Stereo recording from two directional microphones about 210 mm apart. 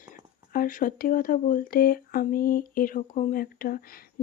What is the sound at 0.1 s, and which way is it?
Speech, 40° left (ahead or behind).